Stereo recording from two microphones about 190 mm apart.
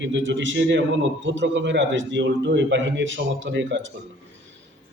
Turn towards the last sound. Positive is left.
turn(degrees=-75)  # may be behind; listen again after turning